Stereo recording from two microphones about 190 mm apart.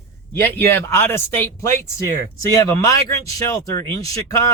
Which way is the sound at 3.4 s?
15° left (ahead or behind).